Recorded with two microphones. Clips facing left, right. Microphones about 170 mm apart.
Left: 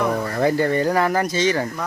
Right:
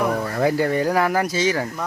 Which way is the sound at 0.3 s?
5° right (ahead or behind).